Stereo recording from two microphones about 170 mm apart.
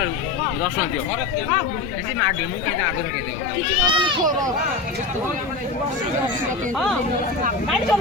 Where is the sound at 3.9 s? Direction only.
30° right (ahead or behind).